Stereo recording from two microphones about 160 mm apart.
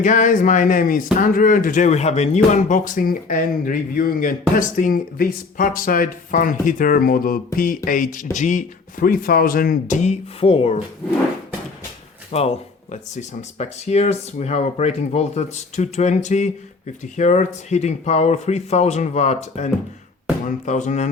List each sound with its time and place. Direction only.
0.0 s speech: 55° left (ahead or behind); by 10.8 s 40° left (ahead or behind)
12.3 s speech: 40° left (ahead or behind)